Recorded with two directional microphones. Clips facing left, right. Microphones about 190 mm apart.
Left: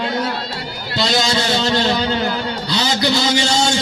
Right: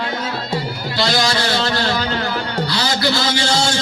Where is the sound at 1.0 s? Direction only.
20° left (ahead or behind).